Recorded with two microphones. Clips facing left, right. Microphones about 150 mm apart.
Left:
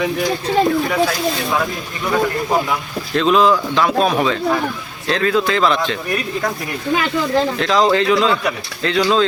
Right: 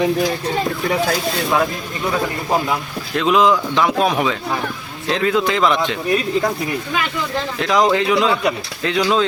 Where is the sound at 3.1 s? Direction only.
15° right (ahead or behind).